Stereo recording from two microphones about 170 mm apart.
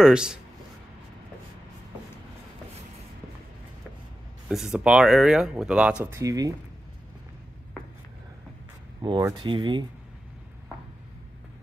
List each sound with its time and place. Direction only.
0.0 s speech: 5° right (ahead or behind)
4.5 s speech: centre (ahead or behind); by 6.5 s 20° right (ahead or behind)
9.0 s speech: 30° right (ahead or behind)